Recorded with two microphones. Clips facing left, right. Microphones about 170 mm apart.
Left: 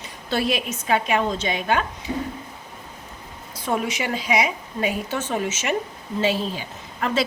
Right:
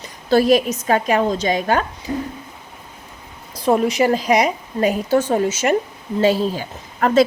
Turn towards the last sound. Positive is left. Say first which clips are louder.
# right 9 dB
turn(degrees=-45)  # may be behind; listen again after turning